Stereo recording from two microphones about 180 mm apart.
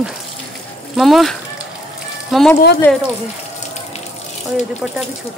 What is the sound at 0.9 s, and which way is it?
Speech, centre (ahead or behind).